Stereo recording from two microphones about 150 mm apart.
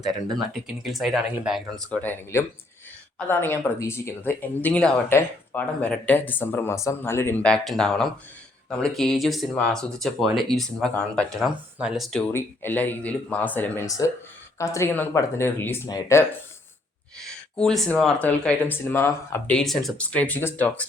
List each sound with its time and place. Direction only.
0.3 s speech: centre (ahead or behind)
1.9 s speech: 10° left (ahead or behind)
12.2 s speech: 15° left (ahead or behind)
17.6 s speech: 5° left (ahead or behind)
19.5 s speech: centre (ahead or behind)